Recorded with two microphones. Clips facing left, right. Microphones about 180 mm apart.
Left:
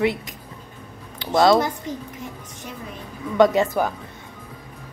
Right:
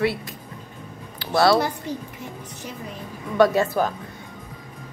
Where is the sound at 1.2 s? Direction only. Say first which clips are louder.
Left 2 dB; 20° left (ahead or behind).